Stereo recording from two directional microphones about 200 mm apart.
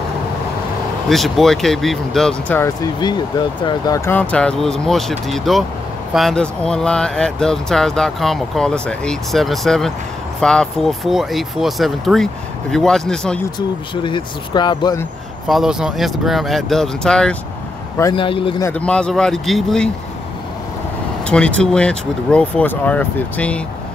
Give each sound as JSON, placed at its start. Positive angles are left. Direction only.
{"t": 1.0, "sound": "speech", "side_deg": 0}
{"t": 13.6, "sound": "speech", "side_deg": 20}
{"t": 15.4, "sound": "speech", "side_deg": 0}
{"t": 18.1, "sound": "speech", "side_deg": 25}
{"t": 18.6, "sound": "speech", "side_deg": 5}
{"t": 21.3, "sound": "speech", "side_deg": 5}